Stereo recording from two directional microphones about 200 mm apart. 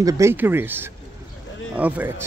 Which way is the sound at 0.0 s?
15° right (ahead or behind).